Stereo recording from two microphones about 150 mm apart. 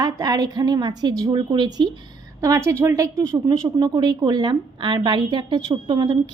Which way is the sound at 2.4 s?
20° right (ahead or behind).